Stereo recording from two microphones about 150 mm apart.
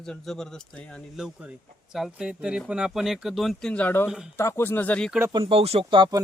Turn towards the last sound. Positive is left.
turn(degrees=-30)  # may be behind; listen again after turning